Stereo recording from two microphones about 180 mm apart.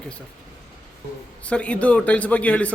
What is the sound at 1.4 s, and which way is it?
A man's voice, 5° left (ahead or behind).